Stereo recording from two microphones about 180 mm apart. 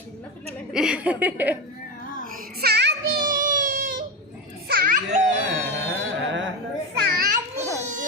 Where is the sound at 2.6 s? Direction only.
65° right (ahead or behind); by 4.0 s 50° right (ahead or behind).